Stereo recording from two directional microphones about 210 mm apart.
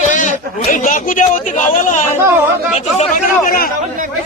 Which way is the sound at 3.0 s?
40° left (ahead or behind).